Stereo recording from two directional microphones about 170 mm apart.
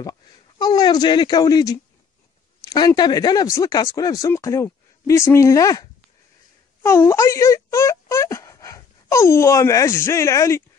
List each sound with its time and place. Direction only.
0.6 s speech: 25° left (ahead or behind)